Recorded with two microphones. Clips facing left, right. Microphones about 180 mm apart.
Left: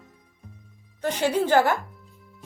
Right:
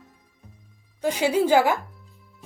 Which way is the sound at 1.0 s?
10° right (ahead or behind).